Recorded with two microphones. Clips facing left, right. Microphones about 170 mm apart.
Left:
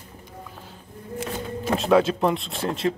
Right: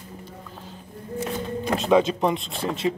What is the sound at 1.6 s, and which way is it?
Speech, centre (ahead or behind).